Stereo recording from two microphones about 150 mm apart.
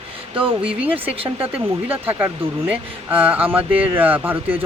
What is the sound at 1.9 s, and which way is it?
Speech, 15° right (ahead or behind).